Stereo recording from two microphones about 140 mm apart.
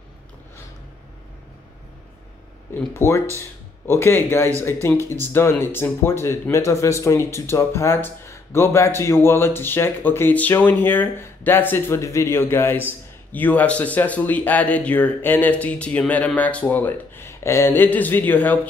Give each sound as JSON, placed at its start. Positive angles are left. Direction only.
{"t": 2.9, "sound": "speech", "side_deg": 20}